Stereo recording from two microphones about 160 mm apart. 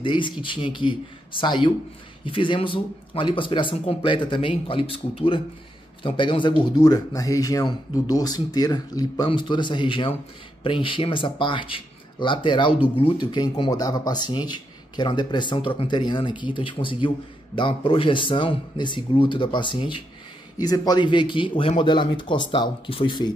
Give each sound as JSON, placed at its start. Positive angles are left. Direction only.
{"t": 0.0, "sound": "speech", "side_deg": 30}